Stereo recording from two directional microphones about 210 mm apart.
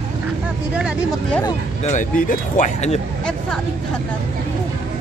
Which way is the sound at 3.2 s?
5° left (ahead or behind).